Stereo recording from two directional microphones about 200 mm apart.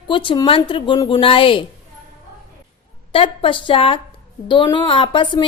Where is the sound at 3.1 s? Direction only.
25° left (ahead or behind).